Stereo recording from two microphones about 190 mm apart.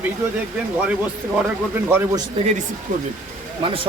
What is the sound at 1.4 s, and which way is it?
Speech, 10° right (ahead or behind).